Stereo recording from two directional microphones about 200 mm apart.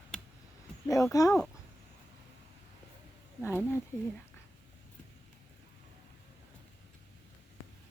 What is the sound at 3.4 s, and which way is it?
Speech, 10° left (ahead or behind).